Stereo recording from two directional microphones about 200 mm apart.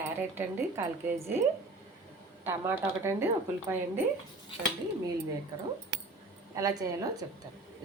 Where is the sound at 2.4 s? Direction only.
10° right (ahead or behind).